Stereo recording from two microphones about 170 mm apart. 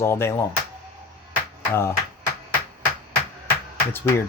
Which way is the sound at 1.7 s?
15° left (ahead or behind).